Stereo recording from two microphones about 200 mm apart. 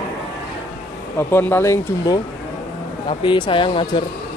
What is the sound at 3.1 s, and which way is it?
Speech, 25° left (ahead or behind).